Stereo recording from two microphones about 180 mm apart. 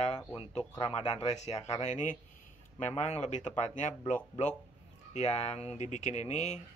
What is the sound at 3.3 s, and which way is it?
Speech, 40° left (ahead or behind).